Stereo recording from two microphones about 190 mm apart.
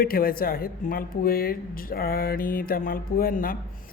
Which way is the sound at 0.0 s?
50° left (ahead or behind).